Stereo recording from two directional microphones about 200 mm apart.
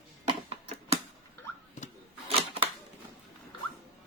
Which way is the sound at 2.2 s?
30° right (ahead or behind).